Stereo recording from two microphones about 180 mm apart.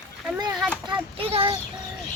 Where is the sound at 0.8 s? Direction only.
30° right (ahead or behind).